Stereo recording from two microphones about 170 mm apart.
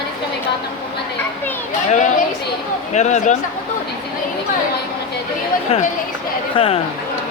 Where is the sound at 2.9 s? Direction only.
45° left (ahead or behind).